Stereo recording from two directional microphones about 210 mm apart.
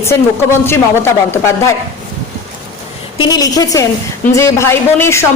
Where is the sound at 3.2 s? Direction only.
20° left (ahead or behind).